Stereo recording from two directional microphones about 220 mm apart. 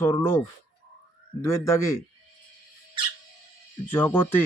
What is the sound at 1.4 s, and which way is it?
Speech, 10° left (ahead or behind).